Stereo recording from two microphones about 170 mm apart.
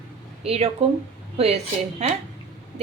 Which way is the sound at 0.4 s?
35° right (ahead or behind).